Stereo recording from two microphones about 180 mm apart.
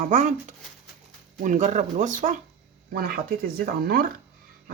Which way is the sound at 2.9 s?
55° right (ahead or behind).